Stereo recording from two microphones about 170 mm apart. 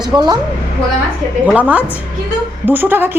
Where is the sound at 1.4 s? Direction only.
10° right (ahead or behind).